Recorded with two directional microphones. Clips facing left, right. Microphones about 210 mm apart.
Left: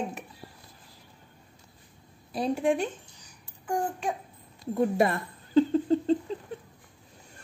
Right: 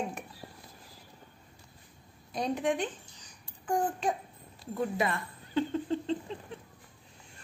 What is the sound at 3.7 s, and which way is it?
Babbling, 10° left (ahead or behind).